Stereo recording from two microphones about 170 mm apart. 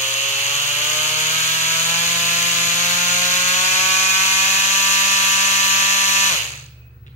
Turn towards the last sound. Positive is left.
turn(degrees=40)  # may be behind; listen again after turning